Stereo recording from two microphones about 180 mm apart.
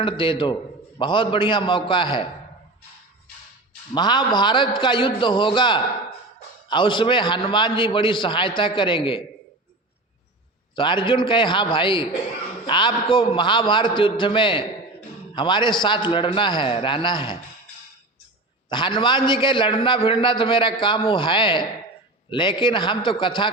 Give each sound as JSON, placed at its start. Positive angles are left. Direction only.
{"t": 0.0, "sound": "a man's voice", "side_deg": 25}
{"t": 3.9, "sound": "a man's voice", "side_deg": 25}
{"t": 10.8, "sound": "a man's voice", "side_deg": 25}
{"t": 18.7, "sound": "a man's voice", "side_deg": 25}